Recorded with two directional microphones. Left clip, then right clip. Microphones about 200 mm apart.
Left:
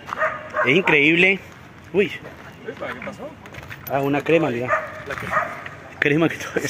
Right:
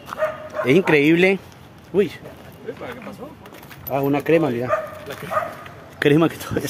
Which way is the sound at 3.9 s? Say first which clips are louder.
Right 1 dB; 15° right (ahead or behind).